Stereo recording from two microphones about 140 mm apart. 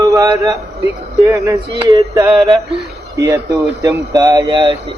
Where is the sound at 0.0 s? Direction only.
20° right (ahead or behind).